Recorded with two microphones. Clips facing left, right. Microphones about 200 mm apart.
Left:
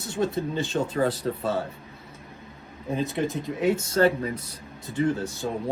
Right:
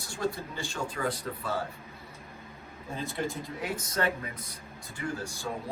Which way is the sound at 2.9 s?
20° left (ahead or behind).